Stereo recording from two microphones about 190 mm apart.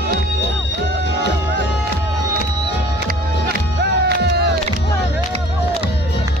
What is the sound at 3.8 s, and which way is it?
Music, 60° right (ahead or behind).